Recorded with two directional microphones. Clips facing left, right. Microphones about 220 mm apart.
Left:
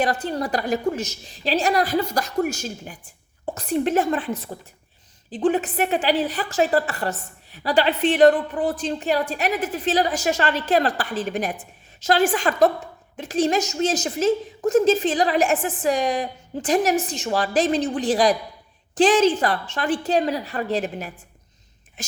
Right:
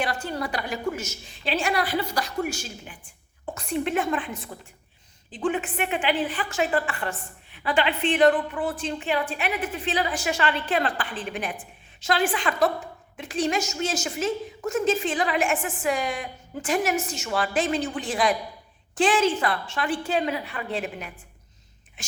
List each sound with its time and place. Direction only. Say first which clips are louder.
0.0 s a woman's voice: left 5 dB; 40° left (ahead or behind)
5.3 s a woman's voice: left 6 dB; 35° left (ahead or behind)